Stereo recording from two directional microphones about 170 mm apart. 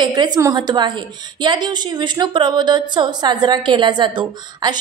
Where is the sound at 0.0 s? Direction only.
25° right (ahead or behind).